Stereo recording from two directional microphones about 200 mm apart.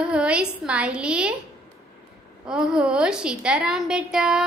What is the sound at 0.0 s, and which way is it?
A woman's voice, 5° right (ahead or behind).